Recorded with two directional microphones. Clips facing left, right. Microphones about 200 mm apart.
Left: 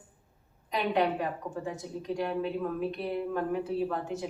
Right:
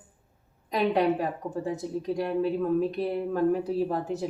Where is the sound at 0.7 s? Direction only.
40° right (ahead or behind).